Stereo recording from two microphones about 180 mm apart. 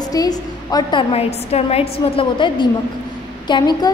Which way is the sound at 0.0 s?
20° left (ahead or behind).